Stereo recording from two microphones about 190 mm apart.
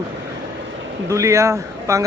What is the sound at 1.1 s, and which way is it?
Speech, 15° right (ahead or behind).